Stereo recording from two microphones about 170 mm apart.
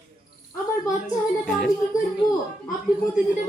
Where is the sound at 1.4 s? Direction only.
Centre (ahead or behind).